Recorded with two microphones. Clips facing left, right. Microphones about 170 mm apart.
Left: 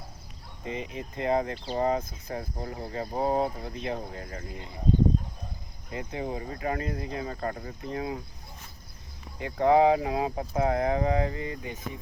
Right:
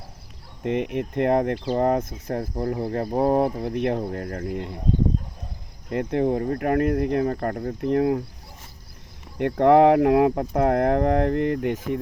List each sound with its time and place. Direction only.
0.6 s speech: 65° right (ahead or behind)
2.6 s speech: 65° right (ahead or behind)
5.9 s speech: 60° right (ahead or behind)
9.4 s speech: 70° right (ahead or behind)